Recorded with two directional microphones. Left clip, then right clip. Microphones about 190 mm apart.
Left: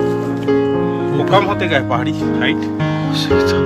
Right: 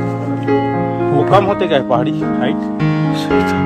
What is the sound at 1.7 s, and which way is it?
Speech, 40° right (ahead or behind).